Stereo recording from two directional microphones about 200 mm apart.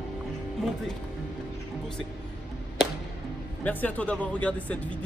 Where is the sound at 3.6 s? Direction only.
10° left (ahead or behind).